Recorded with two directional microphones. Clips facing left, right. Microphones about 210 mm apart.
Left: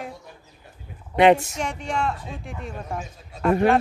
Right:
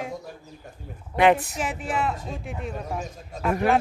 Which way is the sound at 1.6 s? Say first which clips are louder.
Even; 5° right (ahead or behind).